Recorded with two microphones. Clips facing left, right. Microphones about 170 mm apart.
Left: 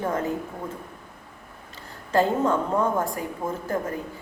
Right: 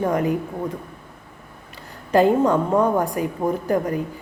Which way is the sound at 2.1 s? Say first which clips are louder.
Right 5 dB; 15° right (ahead or behind).